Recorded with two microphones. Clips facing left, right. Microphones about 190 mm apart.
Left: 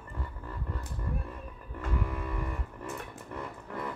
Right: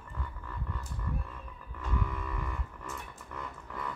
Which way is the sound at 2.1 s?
35° left (ahead or behind).